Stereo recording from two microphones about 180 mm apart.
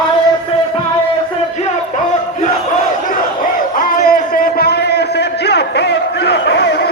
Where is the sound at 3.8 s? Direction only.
55° left (ahead or behind).